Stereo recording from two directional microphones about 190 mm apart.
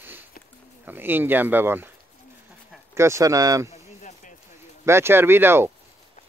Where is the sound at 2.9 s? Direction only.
15° right (ahead or behind).